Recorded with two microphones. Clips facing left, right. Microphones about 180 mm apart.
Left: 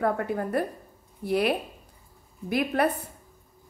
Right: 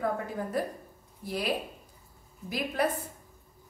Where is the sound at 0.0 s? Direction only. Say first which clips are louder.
Left 5 dB; 65° left (ahead or behind).